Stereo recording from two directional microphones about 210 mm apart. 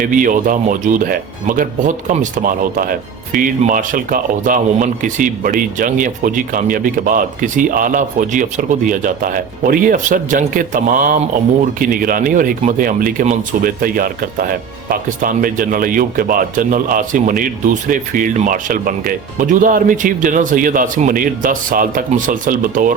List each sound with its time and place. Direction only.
0.0 s speech: 40° right (ahead or behind)